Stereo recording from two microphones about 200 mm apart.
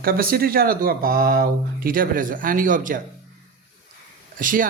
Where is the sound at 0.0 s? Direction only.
50° right (ahead or behind).